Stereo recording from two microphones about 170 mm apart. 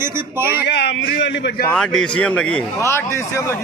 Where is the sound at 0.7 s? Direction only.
80° left.